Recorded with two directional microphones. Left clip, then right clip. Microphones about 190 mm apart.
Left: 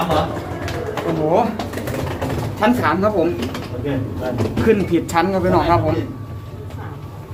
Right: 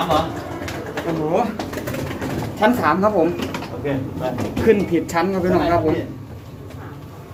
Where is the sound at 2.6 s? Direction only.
20° left (ahead or behind).